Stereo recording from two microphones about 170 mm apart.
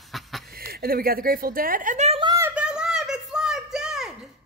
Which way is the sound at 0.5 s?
60° right (ahead or behind).